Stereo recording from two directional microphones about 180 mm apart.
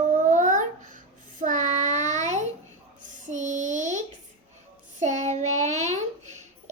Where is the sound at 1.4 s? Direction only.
45° right (ahead or behind).